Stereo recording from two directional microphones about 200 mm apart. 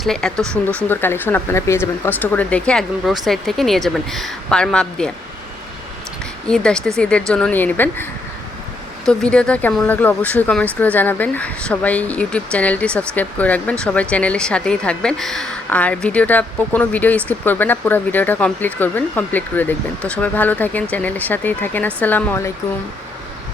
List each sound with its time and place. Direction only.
0.0 s speech: centre (ahead or behind)
6.5 s speech: 5° left (ahead or behind)
9.0 s a woman's voice: 5° left (ahead or behind)